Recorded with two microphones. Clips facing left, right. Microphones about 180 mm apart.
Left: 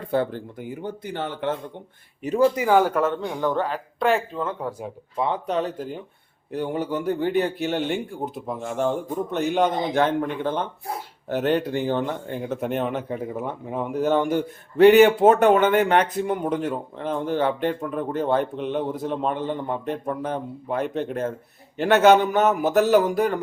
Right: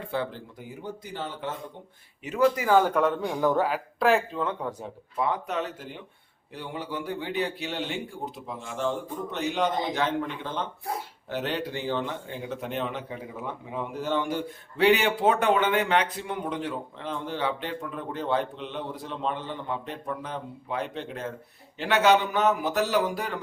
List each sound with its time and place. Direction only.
0.1 s speech: 50° left (ahead or behind)
2.2 s speech: 35° left (ahead or behind)
2.6 s speech: 15° left (ahead or behind)
2.9 s speech: centre (ahead or behind)
5.1 s speech: 25° left (ahead or behind); by 23.4 s 45° left (ahead or behind)